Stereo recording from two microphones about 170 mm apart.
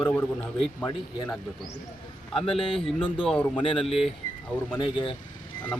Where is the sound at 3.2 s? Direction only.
5° left (ahead or behind).